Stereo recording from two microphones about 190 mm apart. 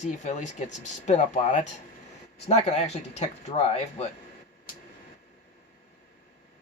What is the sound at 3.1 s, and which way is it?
Speech, 35° left (ahead or behind).